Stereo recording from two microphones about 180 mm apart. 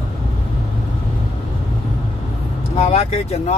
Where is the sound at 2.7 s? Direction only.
35° left (ahead or behind).